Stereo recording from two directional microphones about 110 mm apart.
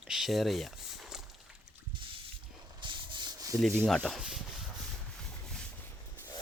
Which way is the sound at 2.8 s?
45° right (ahead or behind).